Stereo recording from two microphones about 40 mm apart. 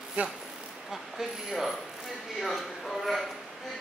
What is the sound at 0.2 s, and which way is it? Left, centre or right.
Speech, right.